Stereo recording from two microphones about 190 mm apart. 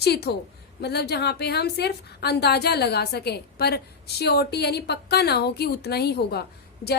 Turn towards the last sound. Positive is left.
turn(degrees=55)  # may be behind; listen again after turning